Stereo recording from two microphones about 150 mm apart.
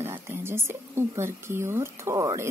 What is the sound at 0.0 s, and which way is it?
Speech, 15° right (ahead or behind).